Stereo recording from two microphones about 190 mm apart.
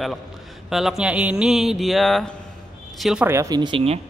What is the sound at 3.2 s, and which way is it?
Speech, 15° right (ahead or behind).